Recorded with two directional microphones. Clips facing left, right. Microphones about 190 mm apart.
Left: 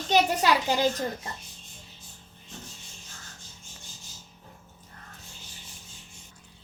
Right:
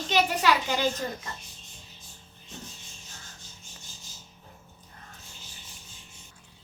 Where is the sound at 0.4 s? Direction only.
40° left (ahead or behind).